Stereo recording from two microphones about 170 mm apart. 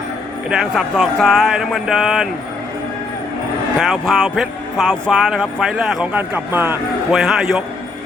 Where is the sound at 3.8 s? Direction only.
Centre (ahead or behind).